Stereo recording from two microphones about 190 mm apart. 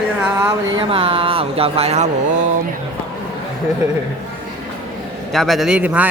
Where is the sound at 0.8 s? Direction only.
30° right (ahead or behind).